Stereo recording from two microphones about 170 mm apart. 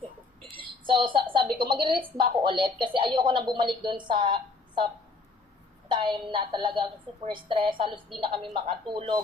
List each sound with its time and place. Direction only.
0.5 s a woman's voice: 30° right (ahead or behind)
5.9 s a woman's voice: 30° right (ahead or behind)